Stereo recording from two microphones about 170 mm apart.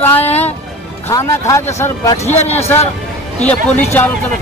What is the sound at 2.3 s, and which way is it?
Speech, 40° left (ahead or behind).